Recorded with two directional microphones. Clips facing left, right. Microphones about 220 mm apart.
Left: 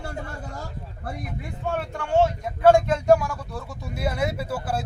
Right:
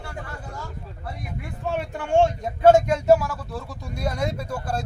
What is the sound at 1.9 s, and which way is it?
Speech, 25° right (ahead or behind).